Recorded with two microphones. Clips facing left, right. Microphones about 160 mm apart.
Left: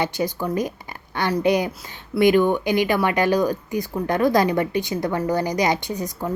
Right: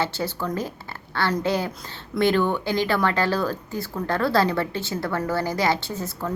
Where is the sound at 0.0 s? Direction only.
15° left (ahead or behind).